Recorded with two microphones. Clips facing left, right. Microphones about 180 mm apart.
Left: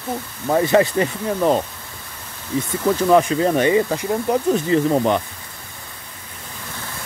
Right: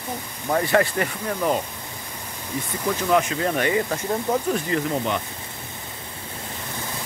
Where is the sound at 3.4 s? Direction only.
25° left (ahead or behind).